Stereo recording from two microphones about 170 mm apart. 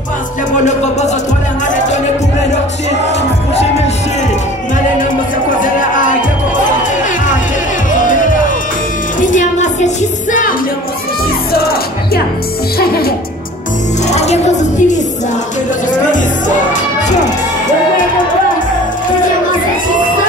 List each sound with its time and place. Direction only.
5.6 s music: 50° left (ahead or behind)
7.9 s music: 50° left (ahead or behind)
12.7 s music: 65° left (ahead or behind)
14.1 s music: 40° left (ahead or behind)